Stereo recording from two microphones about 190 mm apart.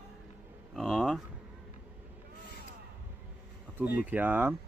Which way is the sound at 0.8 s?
Centre (ahead or behind).